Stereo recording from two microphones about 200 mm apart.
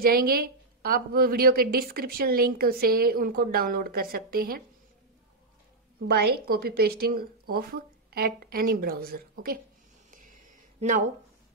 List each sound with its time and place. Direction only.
0.0 s a woman's voice: 50° right (ahead or behind)
6.0 s a woman's voice: 50° right (ahead or behind)
10.1 s a sound: 40° right (ahead or behind)